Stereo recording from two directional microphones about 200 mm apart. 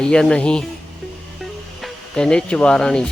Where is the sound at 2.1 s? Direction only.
5° left (ahead or behind).